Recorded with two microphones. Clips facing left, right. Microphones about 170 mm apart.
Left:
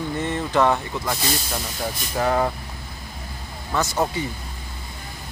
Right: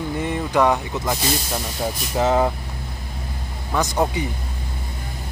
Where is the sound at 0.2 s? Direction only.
10° right (ahead or behind).